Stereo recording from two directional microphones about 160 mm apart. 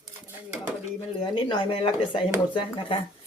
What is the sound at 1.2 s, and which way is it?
Speech, 30° left (ahead or behind).